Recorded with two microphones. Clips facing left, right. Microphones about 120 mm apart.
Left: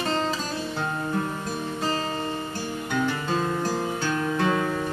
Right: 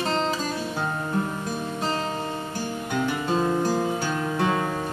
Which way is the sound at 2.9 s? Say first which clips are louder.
Right 1 dB; 15° right (ahead or behind).